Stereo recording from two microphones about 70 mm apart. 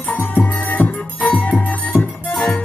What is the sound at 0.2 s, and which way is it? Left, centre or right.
Music, left.